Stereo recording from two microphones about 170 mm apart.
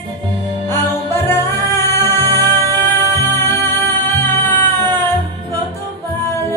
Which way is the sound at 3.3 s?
15° left (ahead or behind).